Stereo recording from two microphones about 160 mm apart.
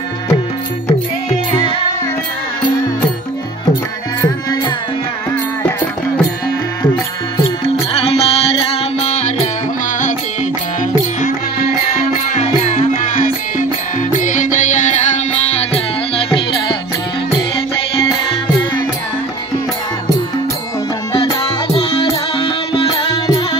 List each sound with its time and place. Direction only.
4.2 s music: 30° left (ahead or behind)
7.6 s music: 40° left (ahead or behind)
12.3 s music: 50° left (ahead or behind)
16.3 s music: 30° left (ahead or behind)
22.0 s music: 35° left (ahead or behind)